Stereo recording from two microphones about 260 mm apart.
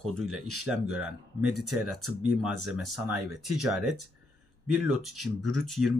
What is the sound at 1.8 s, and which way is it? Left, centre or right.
Speech, right.